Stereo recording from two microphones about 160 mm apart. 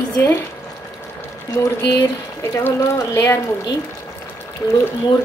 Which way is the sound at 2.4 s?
15° left (ahead or behind).